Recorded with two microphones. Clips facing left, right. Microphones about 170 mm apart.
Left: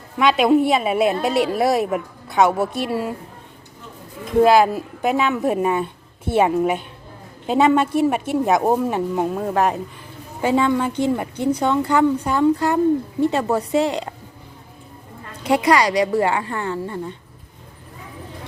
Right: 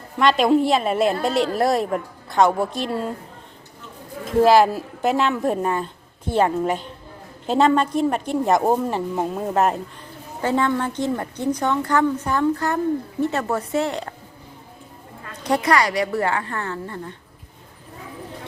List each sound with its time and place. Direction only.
0.2 s a woman's voice: centre (ahead or behind)
4.3 s a woman's voice: centre (ahead or behind)
10.4 s a woman's voice: 10° left (ahead or behind)
15.3 s a woman's voice: 10° left (ahead or behind)